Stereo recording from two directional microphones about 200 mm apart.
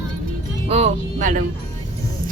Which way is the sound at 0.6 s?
30° right (ahead or behind).